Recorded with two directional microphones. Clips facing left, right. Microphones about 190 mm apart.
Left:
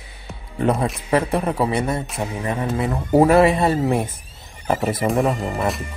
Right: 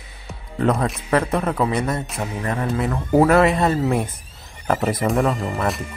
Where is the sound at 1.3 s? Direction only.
15° left (ahead or behind).